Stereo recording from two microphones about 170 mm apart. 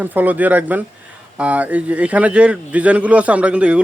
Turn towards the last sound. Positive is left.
turn(degrees=-5)  # may be behind; listen again after turning